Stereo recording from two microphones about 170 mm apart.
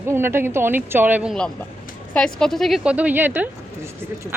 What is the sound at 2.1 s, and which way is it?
A woman's voice, 5° left (ahead or behind).